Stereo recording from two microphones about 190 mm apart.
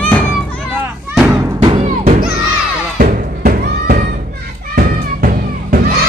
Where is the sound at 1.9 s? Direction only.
40° right (ahead or behind).